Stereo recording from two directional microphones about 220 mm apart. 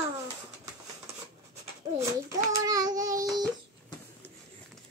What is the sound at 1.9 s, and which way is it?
Child singing, 15° right (ahead or behind).